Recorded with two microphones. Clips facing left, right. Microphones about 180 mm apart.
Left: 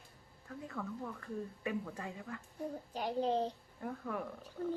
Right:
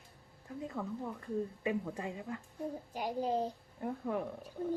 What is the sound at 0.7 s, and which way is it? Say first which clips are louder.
A child's voice: right 2 dB; 20° right (ahead or behind).